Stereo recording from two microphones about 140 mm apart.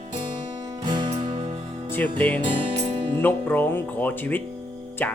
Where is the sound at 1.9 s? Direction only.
10° left (ahead or behind).